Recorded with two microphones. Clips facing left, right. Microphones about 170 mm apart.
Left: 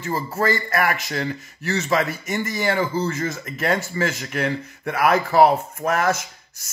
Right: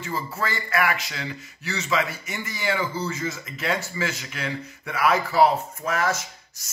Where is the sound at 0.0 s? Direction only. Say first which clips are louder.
Left 6 dB; 45° left (ahead or behind).